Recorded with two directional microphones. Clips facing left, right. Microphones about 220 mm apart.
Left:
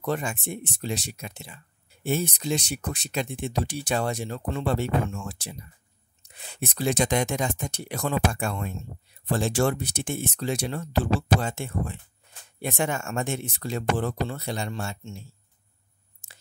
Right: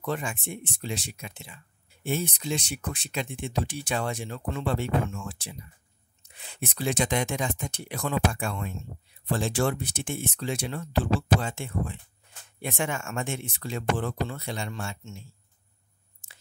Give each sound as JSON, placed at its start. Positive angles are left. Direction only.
{"t": 0.0, "sound": "speech", "side_deg": 40}